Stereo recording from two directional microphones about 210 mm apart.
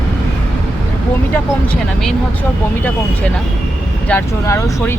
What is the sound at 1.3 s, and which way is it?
Speech, 5° left (ahead or behind).